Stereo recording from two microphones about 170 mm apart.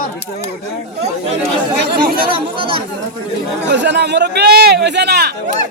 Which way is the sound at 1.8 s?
60° right (ahead or behind).